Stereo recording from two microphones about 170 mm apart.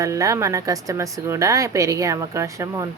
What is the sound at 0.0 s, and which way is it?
A woman's voice, 20° right (ahead or behind).